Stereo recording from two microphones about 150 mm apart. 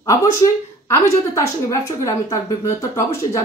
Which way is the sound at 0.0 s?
25° left (ahead or behind).